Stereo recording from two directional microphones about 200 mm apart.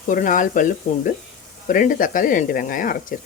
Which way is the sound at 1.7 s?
40° left (ahead or behind).